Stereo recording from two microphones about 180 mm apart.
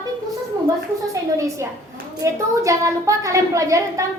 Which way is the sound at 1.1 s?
15° right (ahead or behind).